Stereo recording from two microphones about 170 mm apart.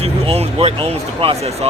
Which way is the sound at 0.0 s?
35° right (ahead or behind).